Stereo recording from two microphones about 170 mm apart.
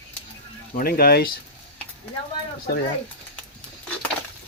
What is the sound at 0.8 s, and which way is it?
Speech, 65° left (ahead or behind).